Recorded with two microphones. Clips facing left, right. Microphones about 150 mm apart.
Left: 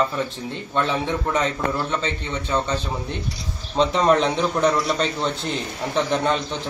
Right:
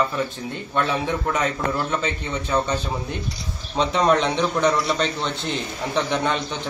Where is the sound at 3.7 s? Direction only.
Centre (ahead or behind).